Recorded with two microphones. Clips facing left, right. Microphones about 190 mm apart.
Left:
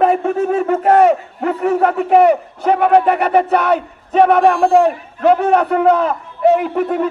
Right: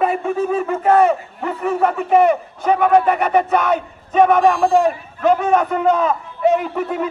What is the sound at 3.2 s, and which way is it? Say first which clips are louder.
A man's voice: left 2 dB; 65° left (ahead or behind).